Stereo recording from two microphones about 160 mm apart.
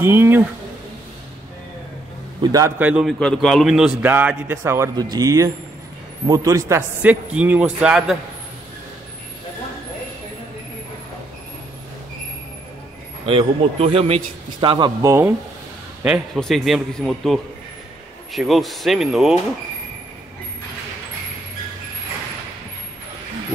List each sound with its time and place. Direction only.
0.0 s a man's voice: 15° right (ahead or behind)
2.4 s a man's voice: 20° right (ahead or behind)
2.8 s a man's voice: 5° right (ahead or behind)
13.2 s a man's voice: 35° right (ahead or behind)
15.0 s a man's voice: 15° right (ahead or behind)